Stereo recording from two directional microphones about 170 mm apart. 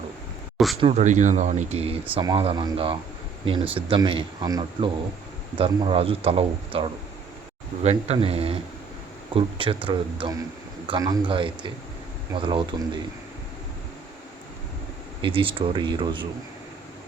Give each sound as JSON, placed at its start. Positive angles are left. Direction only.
{"t": 0.5, "sound": "speech", "side_deg": 0}
{"t": 0.8, "sound": "speech", "side_deg": -30}
{"t": 1.0, "sound": "speech", "side_deg": -45}
{"t": 15.2, "sound": "speech", "side_deg": -30}